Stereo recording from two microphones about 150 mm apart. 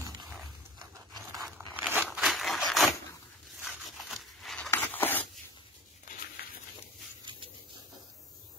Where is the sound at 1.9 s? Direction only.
10° right (ahead or behind).